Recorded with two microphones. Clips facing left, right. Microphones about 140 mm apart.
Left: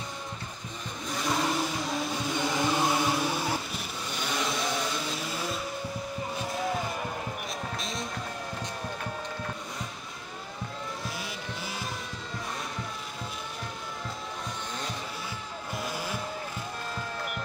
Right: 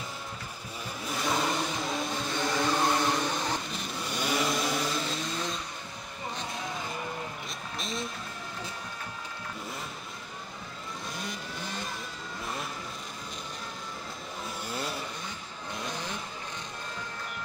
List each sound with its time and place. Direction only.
1.0 s vehicle: centre (ahead or behind)
2.4 s chant: 10° left (ahead or behind)
4.3 s vehicle: 5° right (ahead or behind)
7.8 s music: centre (ahead or behind)
11.1 s vehicle: 5° left (ahead or behind)
15.8 s vehicle: 5° left (ahead or behind)